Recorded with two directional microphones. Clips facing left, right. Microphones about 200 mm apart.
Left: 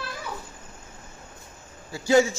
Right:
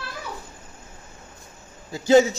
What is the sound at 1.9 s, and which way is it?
Speech, 20° right (ahead or behind).